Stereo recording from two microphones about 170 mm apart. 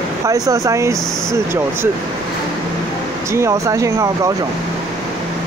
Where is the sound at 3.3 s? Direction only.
15° right (ahead or behind).